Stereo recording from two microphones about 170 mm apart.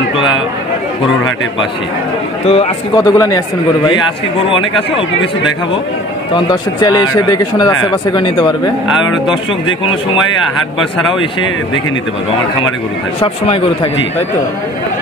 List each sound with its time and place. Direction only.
2.4 s a man's voice: 35° left (ahead or behind)
3.0 s a man's voice: 20° left (ahead or behind)